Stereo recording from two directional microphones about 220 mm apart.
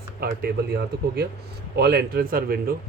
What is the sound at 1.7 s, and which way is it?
Speech, 45° right (ahead or behind).